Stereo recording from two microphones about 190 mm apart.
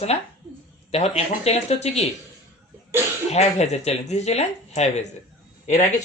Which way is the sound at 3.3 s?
35° left (ahead or behind).